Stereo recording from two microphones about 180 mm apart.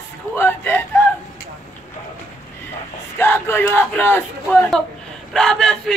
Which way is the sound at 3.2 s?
15° left (ahead or behind).